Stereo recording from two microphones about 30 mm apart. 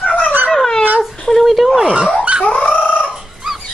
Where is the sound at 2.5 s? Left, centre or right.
Left.